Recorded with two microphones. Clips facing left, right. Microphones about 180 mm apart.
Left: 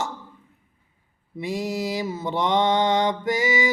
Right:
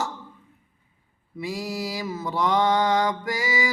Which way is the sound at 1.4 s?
20° left (ahead or behind).